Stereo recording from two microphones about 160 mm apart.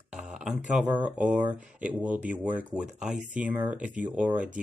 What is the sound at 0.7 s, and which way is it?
Speech, 10° right (ahead or behind).